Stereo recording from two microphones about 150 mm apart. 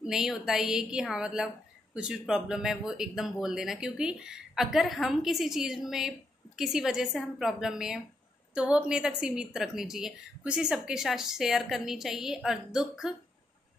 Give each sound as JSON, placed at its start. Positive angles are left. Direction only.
{"t": 0.0, "sound": "speech", "side_deg": -5}